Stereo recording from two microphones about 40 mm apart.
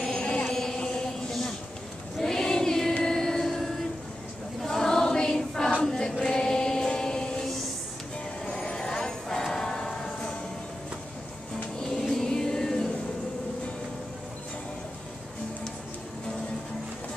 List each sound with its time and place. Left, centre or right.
0.0 s a sound: centre
0.5 s chant: centre
2.1 s choir: centre
3.0 s vehicle: centre
4.6 s choir: centre
6.3 s chant: centre
8.5 s music: centre
11.9 s music: centre